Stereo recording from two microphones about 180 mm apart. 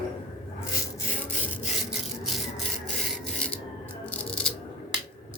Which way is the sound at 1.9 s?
Centre (ahead or behind).